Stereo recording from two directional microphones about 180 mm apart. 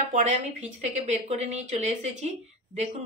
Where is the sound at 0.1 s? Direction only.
40° right (ahead or behind).